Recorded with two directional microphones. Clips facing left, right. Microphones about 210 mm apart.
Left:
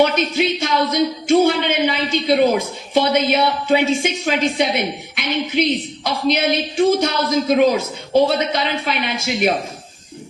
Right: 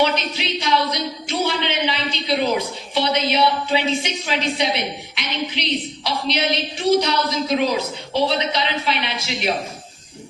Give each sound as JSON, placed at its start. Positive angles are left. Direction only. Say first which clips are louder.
{"t": 0.0, "sound": "speech", "louder": "left 5 dB", "side_deg": 50}